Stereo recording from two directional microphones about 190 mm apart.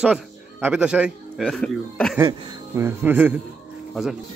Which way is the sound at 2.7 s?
10° right (ahead or behind).